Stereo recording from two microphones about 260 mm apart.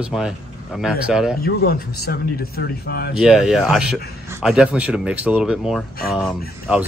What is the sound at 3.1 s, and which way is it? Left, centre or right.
Speech, centre.